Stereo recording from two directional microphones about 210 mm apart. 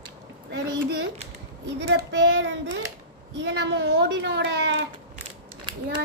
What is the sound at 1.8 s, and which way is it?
A child's voice, 55° right (ahead or behind).